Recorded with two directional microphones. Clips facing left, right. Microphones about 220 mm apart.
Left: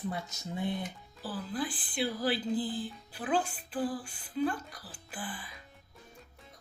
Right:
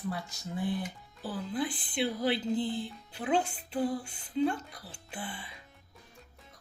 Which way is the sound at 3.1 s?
25° right (ahead or behind).